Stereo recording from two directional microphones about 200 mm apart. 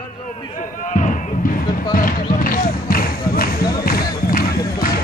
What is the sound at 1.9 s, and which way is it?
Basketball bounce, 45° left (ahead or behind).